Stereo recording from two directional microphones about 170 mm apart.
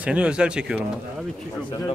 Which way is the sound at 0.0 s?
5° right (ahead or behind).